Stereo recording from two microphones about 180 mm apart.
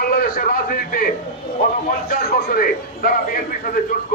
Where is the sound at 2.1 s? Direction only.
55° left (ahead or behind).